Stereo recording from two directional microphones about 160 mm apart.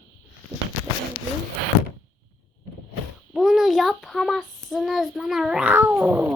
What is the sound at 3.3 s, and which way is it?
A child's voice, centre (ahead or behind).